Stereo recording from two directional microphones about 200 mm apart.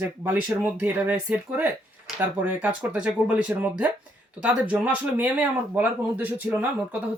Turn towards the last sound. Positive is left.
turn(degrees=-10)  # may be behind; listen again after turning